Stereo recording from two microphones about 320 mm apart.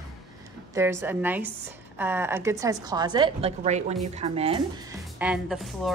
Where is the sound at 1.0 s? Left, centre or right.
Centre.